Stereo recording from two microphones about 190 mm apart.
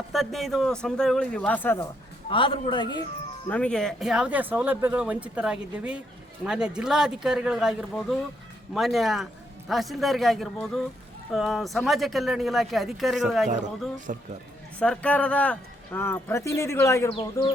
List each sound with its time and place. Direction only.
0.1 s speech: centre (ahead or behind)
2.3 s a man's voice: 25° left (ahead or behind)
3.5 s speech: 5° left (ahead or behind)
14.1 s a man's voice: 45° right (ahead or behind)
14.8 s speech: 5° left (ahead or behind)